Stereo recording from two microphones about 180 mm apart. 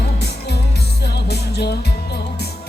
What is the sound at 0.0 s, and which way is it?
Music, 65° left (ahead or behind).